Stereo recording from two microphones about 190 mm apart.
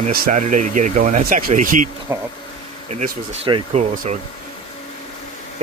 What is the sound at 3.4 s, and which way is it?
Speech, 25° right (ahead or behind).